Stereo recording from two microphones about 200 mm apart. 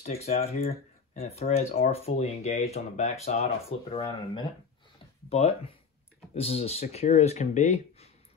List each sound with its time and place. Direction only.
0.0 s speech: 35° left (ahead or behind)
6.3 s speech: 30° left (ahead or behind)